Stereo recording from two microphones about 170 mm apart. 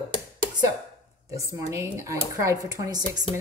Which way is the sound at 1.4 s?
15° right (ahead or behind).